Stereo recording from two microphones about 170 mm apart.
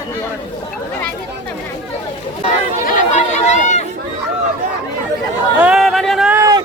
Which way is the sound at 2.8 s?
45° left (ahead or behind).